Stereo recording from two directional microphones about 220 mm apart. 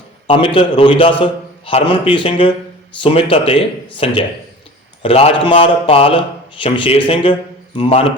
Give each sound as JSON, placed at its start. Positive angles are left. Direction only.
{"t": 0.3, "sound": "a man's voice", "side_deg": 25}